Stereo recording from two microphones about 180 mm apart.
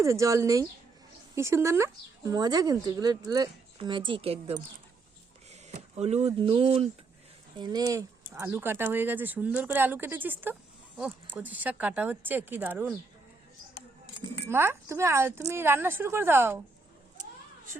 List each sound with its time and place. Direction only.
0.0 s speech: 15° right (ahead or behind); by 6.8 s 30° right (ahead or behind)
7.6 s speech: 20° right (ahead or behind)
14.5 s speech: 15° right (ahead or behind)